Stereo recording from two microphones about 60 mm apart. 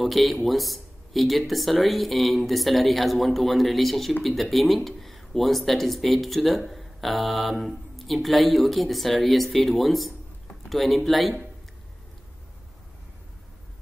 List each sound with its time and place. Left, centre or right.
0.0 s speech: centre